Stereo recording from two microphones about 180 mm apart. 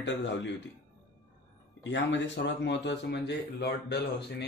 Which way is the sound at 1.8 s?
85° left.